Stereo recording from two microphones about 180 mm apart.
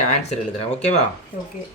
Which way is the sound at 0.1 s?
40° left (ahead or behind).